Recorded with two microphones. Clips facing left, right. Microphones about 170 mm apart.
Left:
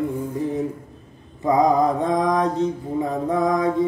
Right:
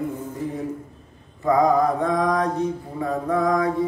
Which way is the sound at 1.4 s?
20° left (ahead or behind).